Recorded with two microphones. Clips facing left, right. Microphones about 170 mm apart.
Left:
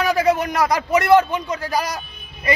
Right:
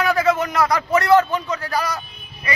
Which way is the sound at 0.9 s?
15° left (ahead or behind).